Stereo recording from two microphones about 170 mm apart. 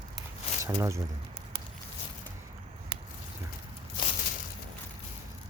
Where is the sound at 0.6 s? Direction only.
15° right (ahead or behind).